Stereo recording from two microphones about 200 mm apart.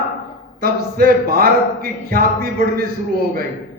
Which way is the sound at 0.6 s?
50° right (ahead or behind).